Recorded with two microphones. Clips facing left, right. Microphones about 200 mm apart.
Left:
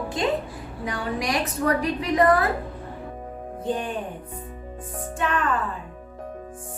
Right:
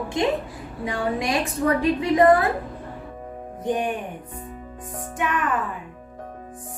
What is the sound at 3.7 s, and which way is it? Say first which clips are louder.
Speech: right 3 dB; 15° right (ahead or behind).